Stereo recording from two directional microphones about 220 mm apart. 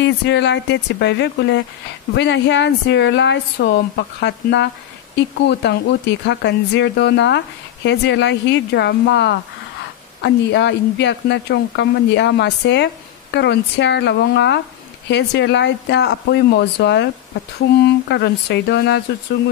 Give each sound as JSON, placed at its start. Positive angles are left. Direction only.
{"t": 0.0, "sound": "speech", "side_deg": 55}